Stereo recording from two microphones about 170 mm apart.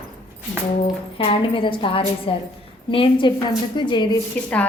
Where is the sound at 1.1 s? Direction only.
30° left (ahead or behind).